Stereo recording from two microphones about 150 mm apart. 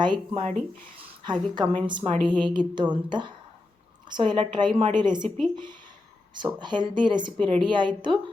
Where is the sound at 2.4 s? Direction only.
30° right (ahead or behind).